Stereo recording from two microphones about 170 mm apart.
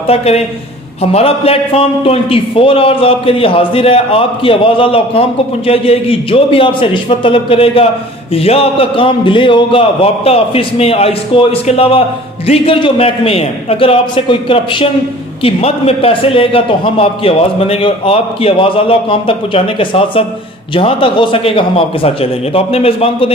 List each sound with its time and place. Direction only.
0.1 s a man's voice: 35° left (ahead or behind)